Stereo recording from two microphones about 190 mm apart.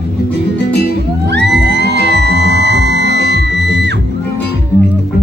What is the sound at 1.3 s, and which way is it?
Music, 65° right (ahead or behind).